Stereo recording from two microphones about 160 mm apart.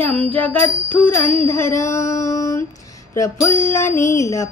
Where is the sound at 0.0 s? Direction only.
5° left (ahead or behind).